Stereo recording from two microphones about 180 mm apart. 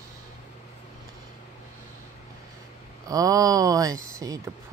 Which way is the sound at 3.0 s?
20° right (ahead or behind).